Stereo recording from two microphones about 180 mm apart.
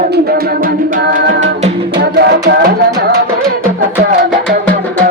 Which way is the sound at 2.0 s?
65° right (ahead or behind).